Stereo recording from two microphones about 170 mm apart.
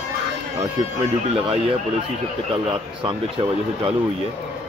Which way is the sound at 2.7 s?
30° right (ahead or behind).